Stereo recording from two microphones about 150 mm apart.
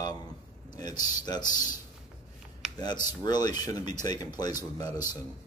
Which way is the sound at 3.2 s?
25° left (ahead or behind).